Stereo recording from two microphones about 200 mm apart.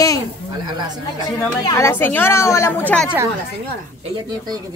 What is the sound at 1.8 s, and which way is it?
A woman's voice, 10° left (ahead or behind).